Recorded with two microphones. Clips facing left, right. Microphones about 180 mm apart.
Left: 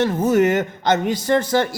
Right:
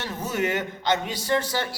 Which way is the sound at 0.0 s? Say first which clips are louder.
Left 11 dB; 50° left (ahead or behind).